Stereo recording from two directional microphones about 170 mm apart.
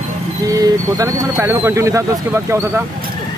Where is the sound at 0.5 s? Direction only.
20° right (ahead or behind).